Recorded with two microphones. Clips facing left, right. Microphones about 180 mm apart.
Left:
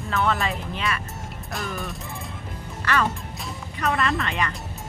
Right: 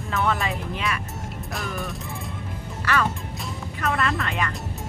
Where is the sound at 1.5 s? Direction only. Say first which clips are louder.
Even; centre (ahead or behind).